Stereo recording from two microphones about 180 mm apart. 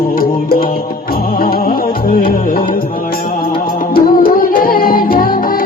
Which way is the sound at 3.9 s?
55° left (ahead or behind).